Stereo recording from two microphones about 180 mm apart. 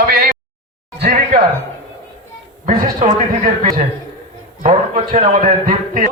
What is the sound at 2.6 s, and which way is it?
Speech, 45° right (ahead or behind).